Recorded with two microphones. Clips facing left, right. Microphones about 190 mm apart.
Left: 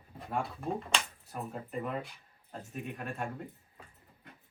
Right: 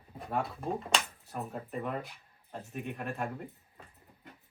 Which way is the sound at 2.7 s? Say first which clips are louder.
Right 2 dB; centre (ahead or behind).